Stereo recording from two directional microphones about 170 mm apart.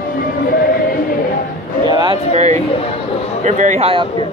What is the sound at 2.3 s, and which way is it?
Speech, 40° right (ahead or behind).